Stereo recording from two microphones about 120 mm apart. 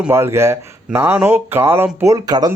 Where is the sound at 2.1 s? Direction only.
35° right (ahead or behind).